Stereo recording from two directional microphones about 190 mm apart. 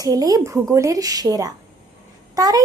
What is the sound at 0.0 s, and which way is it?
A woman's voice, 20° right (ahead or behind).